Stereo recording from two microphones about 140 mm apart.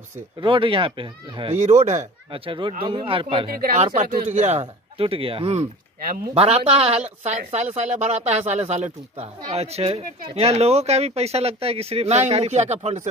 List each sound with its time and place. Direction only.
0.4 s speech: 40° right (ahead or behind)
1.5 s speech: 55° right (ahead or behind); by 3.4 s 40° right (ahead or behind)
3.5 s speech: 90° right
3.8 s speech: 65° right (ahead or behind)
4.4 s speech: 50° right (ahead or behind)